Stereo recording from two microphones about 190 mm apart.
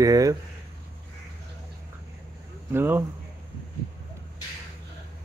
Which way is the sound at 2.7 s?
10° right (ahead or behind).